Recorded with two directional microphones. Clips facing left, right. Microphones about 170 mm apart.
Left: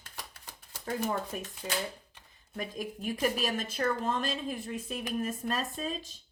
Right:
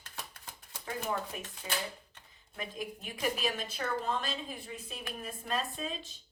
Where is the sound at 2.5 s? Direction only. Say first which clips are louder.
Left 3 dB; 45° left (ahead or behind).